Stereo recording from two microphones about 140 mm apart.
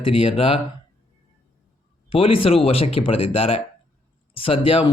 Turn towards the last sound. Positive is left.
turn(degrees=40)  # may be behind; listen again after turning